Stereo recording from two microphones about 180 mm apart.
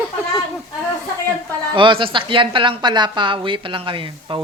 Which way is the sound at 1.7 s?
30° right (ahead or behind).